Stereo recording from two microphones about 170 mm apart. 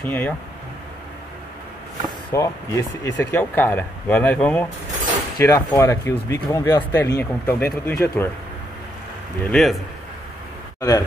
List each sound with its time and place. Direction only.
0.0 s speech: 10° left (ahead or behind)
2.3 s speech: 20° left (ahead or behind)
9.5 s a man's voice: centre (ahead or behind)
10.8 s speech: 20° left (ahead or behind)